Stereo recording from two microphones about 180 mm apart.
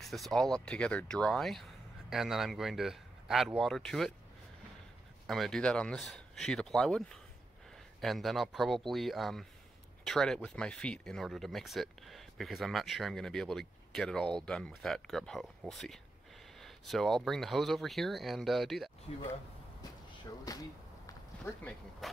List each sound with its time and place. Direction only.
0.0 s speech: centre (ahead or behind)
5.2 s speech: centre (ahead or behind)
19.1 s speech: 30° left (ahead or behind)
20.5 s speech: 20° left (ahead or behind)
22.0 s a sound: centre (ahead or behind)